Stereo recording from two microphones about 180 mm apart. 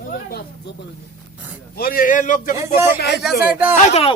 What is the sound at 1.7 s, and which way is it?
Speech, 55° left (ahead or behind).